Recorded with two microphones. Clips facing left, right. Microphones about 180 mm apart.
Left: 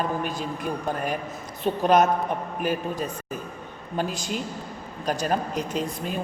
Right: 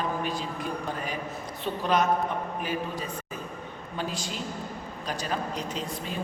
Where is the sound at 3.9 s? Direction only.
45° left (ahead or behind).